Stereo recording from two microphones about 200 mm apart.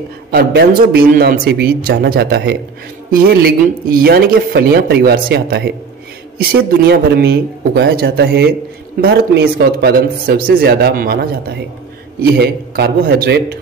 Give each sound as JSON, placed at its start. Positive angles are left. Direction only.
{"t": 0.3, "sound": "speech", "side_deg": -50}